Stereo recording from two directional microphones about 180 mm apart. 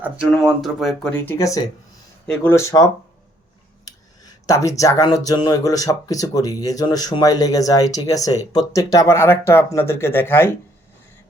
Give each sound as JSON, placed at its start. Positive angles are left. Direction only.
{"t": 0.0, "sound": "speech", "side_deg": -5}
{"t": 2.2, "sound": "speech", "side_deg": 5}
{"t": 4.4, "sound": "speech", "side_deg": 15}